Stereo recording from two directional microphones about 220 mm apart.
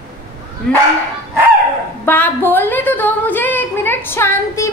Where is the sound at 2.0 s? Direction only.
10° left (ahead or behind).